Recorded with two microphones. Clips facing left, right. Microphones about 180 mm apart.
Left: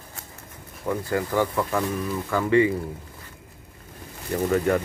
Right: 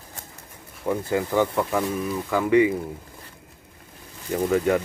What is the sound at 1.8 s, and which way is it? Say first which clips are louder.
Speech: right 1 dB; 5° right (ahead or behind).